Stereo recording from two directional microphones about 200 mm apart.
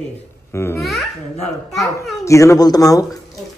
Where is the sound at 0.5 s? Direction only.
15° left (ahead or behind).